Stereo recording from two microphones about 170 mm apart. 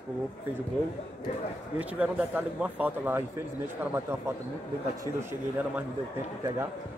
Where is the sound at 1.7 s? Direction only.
10° right (ahead or behind).